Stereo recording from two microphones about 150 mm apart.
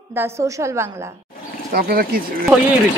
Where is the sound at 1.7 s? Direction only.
80° right.